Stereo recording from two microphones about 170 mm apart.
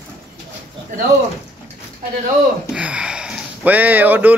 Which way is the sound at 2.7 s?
5° right (ahead or behind).